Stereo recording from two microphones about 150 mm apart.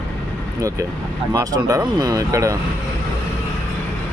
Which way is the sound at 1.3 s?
25° right (ahead or behind).